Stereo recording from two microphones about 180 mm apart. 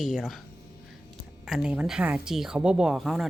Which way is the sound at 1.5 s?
5° right (ahead or behind).